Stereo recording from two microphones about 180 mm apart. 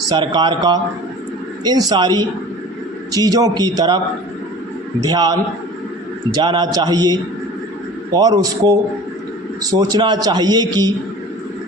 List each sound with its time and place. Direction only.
0.2 s a man's voice: 25° right (ahead or behind)
5.0 s a man's voice: 25° right (ahead or behind)